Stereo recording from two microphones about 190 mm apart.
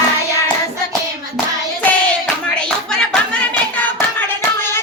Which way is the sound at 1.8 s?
5° left (ahead or behind).